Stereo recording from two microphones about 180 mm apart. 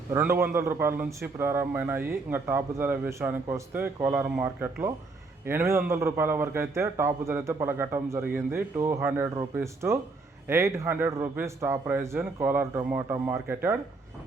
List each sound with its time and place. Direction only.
0.1 s a man's voice: 15° right (ahead or behind)